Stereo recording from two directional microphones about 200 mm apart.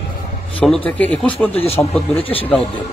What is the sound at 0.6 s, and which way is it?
Speech, 5° left (ahead or behind).